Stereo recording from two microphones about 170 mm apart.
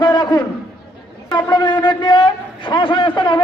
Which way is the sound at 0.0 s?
25° left (ahead or behind).